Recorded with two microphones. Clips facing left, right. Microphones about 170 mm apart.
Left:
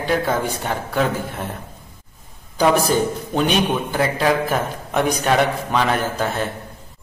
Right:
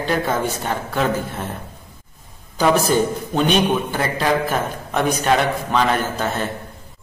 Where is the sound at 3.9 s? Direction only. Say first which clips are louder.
Left 1 dB; 10° left (ahead or behind).